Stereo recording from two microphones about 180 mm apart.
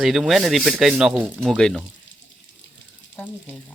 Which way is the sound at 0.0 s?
Centre (ahead or behind).